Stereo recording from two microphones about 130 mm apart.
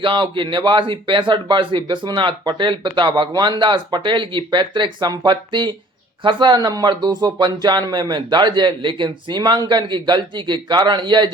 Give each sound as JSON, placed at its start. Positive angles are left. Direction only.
{"t": 0.0, "sound": "speech", "side_deg": -40}